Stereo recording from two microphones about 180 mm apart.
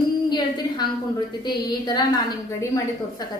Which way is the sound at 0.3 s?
25° left (ahead or behind).